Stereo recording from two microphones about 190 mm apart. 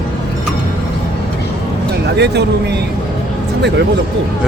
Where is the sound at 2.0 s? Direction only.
65° right (ahead or behind).